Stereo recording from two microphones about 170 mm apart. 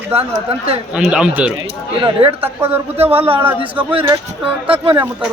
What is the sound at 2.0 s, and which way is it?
Speech, 35° right (ahead or behind).